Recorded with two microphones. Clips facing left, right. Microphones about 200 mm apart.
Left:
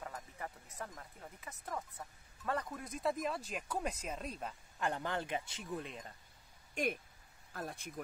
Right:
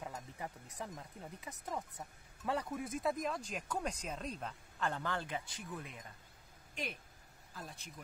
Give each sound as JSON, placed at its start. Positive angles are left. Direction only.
{"t": 0.0, "sound": "speech", "side_deg": -15}
{"t": 6.7, "sound": "speech", "side_deg": 50}